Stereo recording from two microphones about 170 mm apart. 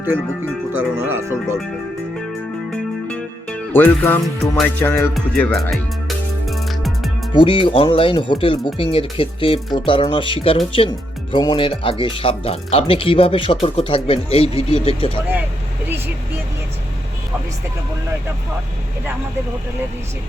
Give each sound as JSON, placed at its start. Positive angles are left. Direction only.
{"t": 0.8, "sound": "speech", "side_deg": -10}
{"t": 2.7, "sound": "music", "side_deg": 5}
{"t": 4.8, "sound": "music", "side_deg": 15}
{"t": 5.1, "sound": "music", "side_deg": 0}
{"t": 7.3, "sound": "speech", "side_deg": 30}